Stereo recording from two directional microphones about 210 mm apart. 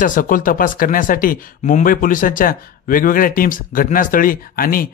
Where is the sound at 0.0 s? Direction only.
40° left (ahead or behind).